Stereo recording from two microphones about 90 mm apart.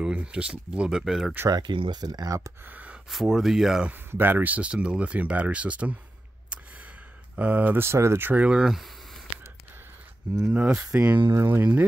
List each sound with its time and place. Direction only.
0.0 s speech: 10° right (ahead or behind)
1.5 s speech: 60° right (ahead or behind); by 2.5 s 40° right (ahead or behind)
2.6 s a sound: 20° right (ahead or behind)
3.1 s speech: 5° right (ahead or behind)
3.9 s speech: 20° right (ahead or behind)
6.5 s a sound: 15° right (ahead or behind)
7.3 s speech: 20° right (ahead or behind); by 9.2 s centre (ahead or behind)
10.5 s speech: 15° right (ahead or behind)
11.2 s speech: 30° right (ahead or behind)